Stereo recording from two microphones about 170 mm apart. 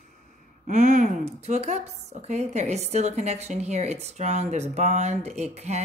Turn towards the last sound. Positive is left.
turn(degrees=-40)  # may be behind; listen again after turning